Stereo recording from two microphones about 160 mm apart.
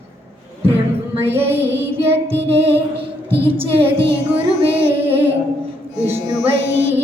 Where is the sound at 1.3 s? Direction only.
15° right (ahead or behind).